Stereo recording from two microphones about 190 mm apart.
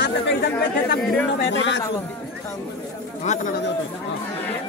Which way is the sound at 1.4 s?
70° left (ahead or behind).